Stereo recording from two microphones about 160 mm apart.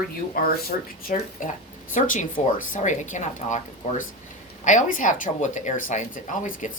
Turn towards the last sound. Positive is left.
turn(degrees=50)  # may be behind; listen again after turning